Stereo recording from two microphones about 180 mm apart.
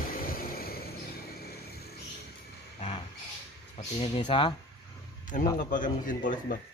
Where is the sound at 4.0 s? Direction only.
30° left (ahead or behind).